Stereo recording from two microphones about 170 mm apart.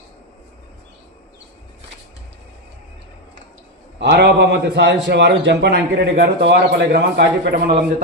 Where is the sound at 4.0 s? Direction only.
85° right.